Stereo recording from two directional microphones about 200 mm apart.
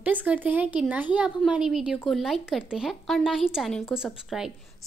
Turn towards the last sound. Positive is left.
turn(degrees=0)  # may be behind; listen again after turning